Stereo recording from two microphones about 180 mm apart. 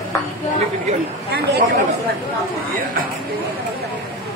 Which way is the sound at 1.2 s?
65° right (ahead or behind).